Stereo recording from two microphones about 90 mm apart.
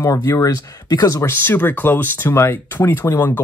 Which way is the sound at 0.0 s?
40° left (ahead or behind).